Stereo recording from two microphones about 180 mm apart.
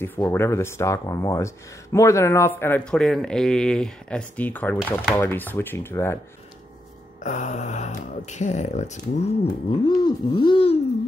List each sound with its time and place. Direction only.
0.0 s speech: 10° left (ahead or behind)
7.2 s speech: 40° left (ahead or behind)